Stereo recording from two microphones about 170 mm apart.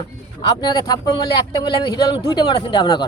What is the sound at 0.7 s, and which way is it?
A man's voice, 25° left (ahead or behind).